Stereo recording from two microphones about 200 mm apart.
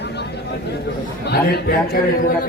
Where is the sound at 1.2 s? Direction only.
50° left (ahead or behind).